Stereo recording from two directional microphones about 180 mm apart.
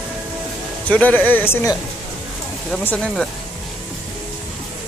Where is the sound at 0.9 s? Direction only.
10° left (ahead or behind).